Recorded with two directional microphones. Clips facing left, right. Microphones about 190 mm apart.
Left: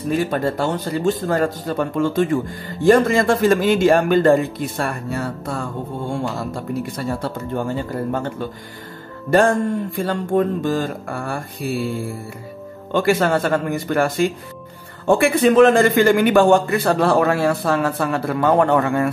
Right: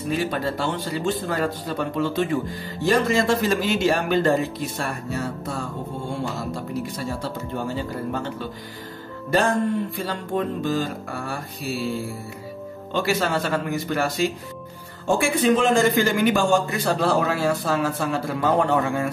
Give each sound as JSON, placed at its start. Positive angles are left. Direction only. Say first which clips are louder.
{"t": 0.1, "sound": "speech", "louder": "left 5 dB", "side_deg": 50}
{"t": 12.9, "sound": "a man's voice", "louder": "left 6 dB", "side_deg": 50}